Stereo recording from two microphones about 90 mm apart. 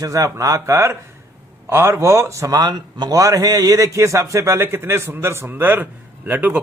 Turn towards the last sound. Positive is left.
turn(degrees=-20)  # may be behind; listen again after turning